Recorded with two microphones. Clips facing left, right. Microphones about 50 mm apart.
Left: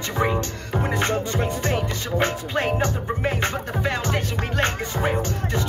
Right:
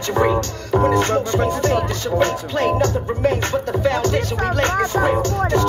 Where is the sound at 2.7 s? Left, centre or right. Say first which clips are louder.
Right 5 dB; left.